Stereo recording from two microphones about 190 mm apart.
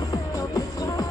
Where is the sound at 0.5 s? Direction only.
20° left (ahead or behind).